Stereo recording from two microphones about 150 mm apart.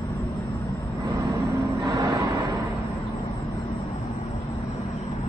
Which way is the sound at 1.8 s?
25° right (ahead or behind).